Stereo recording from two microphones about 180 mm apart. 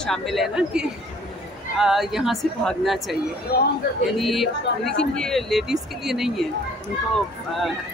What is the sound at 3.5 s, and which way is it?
Speech, 60° left (ahead or behind).